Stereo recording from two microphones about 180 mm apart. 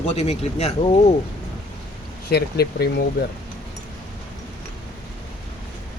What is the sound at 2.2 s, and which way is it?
Speech, 60° left (ahead or behind).